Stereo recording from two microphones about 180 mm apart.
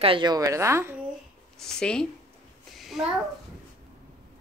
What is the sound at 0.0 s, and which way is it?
Speech, 25° right (ahead or behind).